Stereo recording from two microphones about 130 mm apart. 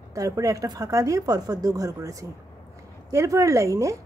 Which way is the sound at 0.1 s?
25° right (ahead or behind).